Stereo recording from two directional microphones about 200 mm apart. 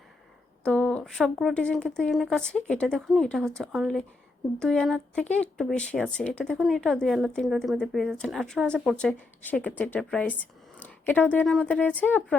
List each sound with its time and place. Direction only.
0.6 s speech: 5° left (ahead or behind)